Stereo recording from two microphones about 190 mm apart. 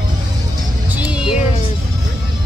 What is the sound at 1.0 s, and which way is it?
Music, 5° right (ahead or behind).